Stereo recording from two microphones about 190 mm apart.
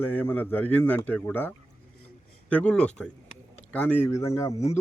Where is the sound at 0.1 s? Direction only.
10° left (ahead or behind).